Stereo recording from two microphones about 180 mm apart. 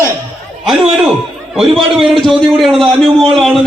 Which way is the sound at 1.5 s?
Centre (ahead or behind).